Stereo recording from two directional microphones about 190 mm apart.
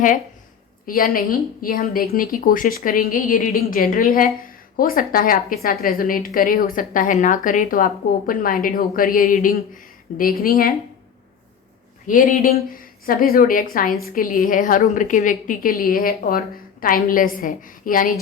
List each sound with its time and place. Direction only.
0.9 s a woman's voice: 50° left (ahead or behind)
12.0 s a woman's voice: 45° left (ahead or behind)